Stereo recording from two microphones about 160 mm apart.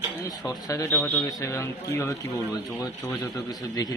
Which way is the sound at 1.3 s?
20° left (ahead or behind).